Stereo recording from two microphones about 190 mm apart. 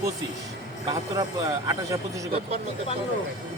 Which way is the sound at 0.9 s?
20° right (ahead or behind).